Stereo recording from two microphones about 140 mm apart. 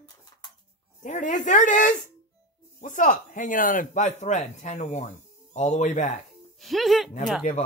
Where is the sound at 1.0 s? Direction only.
65° left (ahead or behind).